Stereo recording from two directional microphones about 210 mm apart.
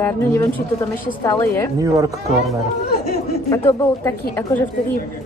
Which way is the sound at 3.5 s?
10° left (ahead or behind).